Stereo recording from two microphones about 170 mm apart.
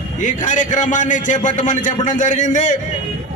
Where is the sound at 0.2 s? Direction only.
45° left (ahead or behind).